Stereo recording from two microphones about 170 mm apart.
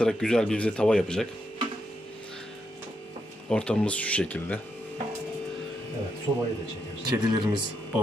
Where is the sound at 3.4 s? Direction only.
5° left (ahead or behind).